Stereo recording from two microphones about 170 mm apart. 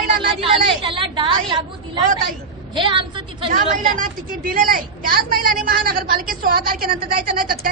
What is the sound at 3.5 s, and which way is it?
A woman's voice, 50° right (ahead or behind).